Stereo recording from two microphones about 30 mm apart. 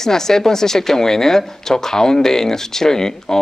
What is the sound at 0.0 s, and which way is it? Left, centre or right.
Speech, centre.